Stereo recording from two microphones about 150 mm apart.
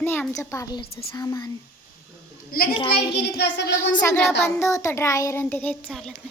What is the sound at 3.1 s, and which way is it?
Child singing, 90° left.